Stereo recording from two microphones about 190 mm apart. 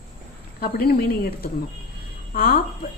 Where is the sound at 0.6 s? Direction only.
55° left (ahead or behind).